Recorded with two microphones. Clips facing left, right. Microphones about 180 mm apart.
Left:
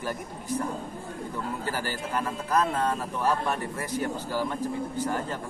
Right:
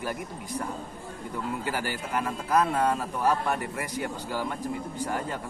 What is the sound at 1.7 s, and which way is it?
A man's voice, 15° right (ahead or behind).